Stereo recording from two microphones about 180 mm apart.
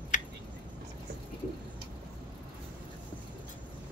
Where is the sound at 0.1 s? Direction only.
45° left (ahead or behind).